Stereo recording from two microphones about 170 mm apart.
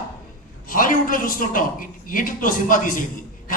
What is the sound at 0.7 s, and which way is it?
A man's voice, 55° left (ahead or behind).